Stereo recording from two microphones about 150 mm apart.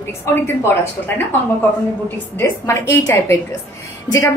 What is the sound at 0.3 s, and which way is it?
Speech, 15° left (ahead or behind).